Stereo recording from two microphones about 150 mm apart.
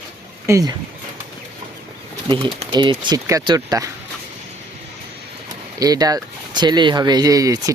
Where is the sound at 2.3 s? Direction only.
35° right (ahead or behind).